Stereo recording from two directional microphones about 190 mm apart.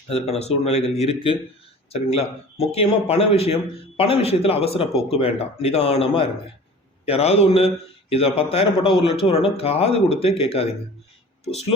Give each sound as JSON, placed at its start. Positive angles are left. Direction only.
{"t": 0.1, "sound": "speech", "side_deg": 35}